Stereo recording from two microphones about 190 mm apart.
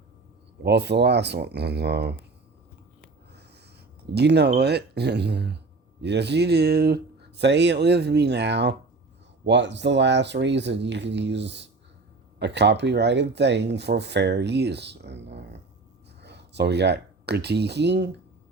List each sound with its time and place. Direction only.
0.6 s speech: 60° right (ahead or behind)
4.1 s speech: 60° right (ahead or behind)